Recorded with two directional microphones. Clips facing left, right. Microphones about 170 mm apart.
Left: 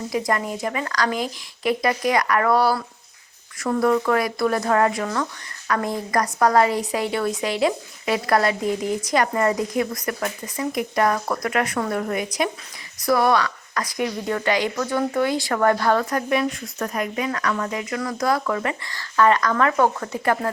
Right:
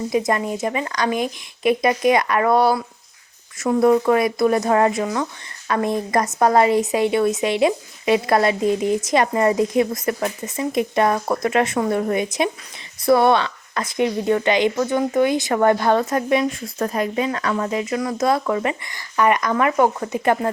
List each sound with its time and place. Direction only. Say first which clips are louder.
0.1 s speech: right 2 dB; 25° right (ahead or behind)